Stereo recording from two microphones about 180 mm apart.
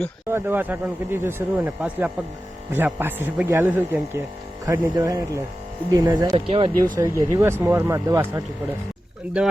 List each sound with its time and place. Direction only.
0.3 s speech: 10° right (ahead or behind); by 6.9 s 30° right (ahead or behind)
7.0 s speech: 15° right (ahead or behind)